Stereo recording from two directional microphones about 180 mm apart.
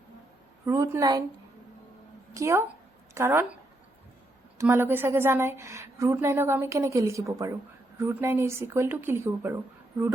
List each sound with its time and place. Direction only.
0.6 s a woman's voice: 15° right (ahead or behind)
2.3 s a woman's voice: 15° right (ahead or behind)
4.5 s a woman's voice: 15° right (ahead or behind)